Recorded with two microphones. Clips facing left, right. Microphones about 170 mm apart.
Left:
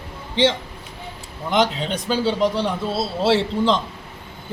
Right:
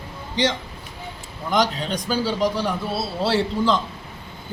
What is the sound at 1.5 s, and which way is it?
Speech, 25° left (ahead or behind).